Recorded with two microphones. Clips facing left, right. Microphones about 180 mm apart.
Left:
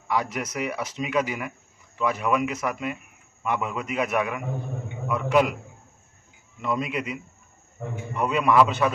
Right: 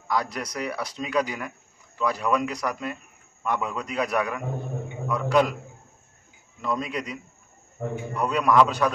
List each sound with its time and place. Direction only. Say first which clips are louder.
0.1 s speech: left 1 dB; 5° left (ahead or behind)
6.6 s speech: left 1 dB; 5° left (ahead or behind)